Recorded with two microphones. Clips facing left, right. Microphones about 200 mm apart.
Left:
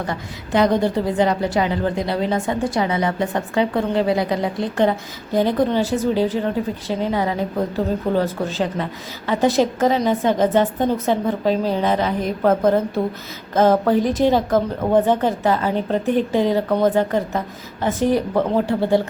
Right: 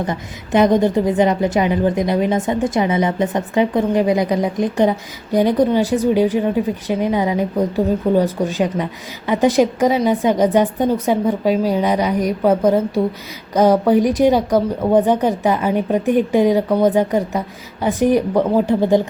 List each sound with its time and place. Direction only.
0.0 s a woman's voice: 20° right (ahead or behind)